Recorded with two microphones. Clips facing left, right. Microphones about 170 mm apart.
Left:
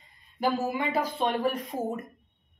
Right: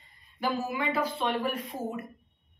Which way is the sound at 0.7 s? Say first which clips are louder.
Left 1 dB; 40° left (ahead or behind).